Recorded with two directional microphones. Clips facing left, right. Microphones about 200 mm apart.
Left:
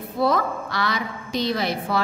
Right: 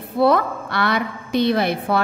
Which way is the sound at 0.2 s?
60° right (ahead or behind).